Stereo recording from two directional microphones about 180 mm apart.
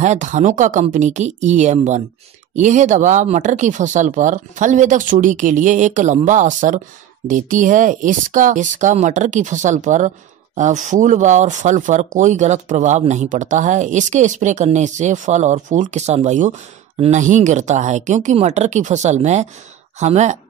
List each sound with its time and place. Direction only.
0.0 s speech: 40° right (ahead or behind)